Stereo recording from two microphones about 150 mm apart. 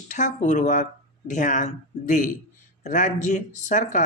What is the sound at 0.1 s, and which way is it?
Speech, 55° left (ahead or behind).